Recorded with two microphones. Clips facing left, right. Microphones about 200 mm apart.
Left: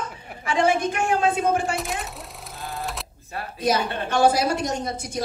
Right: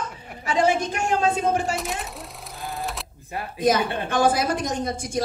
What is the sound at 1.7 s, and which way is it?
Cash register, centre (ahead or behind).